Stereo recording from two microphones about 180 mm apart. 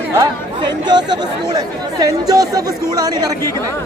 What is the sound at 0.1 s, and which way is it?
Speech, 20° right (ahead or behind).